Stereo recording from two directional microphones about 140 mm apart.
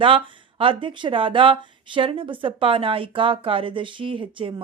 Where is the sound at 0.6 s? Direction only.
35° right (ahead or behind).